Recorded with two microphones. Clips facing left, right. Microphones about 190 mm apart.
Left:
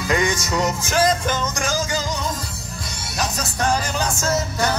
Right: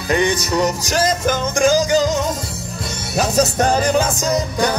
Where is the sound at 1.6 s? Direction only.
15° right (ahead or behind).